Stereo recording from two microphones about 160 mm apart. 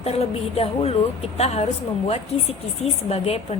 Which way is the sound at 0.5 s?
40° left (ahead or behind).